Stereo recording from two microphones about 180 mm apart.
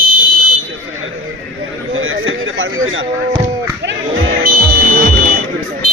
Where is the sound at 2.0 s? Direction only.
90° right.